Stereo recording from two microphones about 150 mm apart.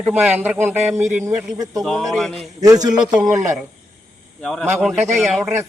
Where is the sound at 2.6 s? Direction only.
25° right (ahead or behind).